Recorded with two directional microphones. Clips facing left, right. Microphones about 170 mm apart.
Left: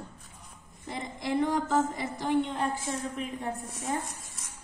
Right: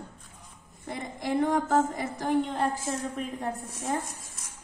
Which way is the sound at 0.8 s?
50° right (ahead or behind).